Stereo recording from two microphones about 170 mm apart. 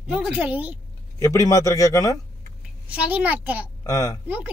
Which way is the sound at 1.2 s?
20° left (ahead or behind).